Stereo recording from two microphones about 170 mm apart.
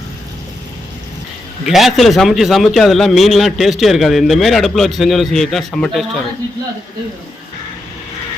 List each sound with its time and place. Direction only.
1.6 s a man's voice: centre (ahead or behind)